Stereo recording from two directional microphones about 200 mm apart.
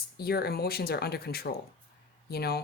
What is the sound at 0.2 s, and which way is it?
Speech, 50° left (ahead or behind).